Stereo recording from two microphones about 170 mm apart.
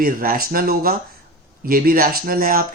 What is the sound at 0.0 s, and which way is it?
Speech, 60° right (ahead or behind).